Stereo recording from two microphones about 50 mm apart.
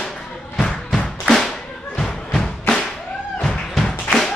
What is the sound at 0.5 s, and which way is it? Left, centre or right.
Thump, centre.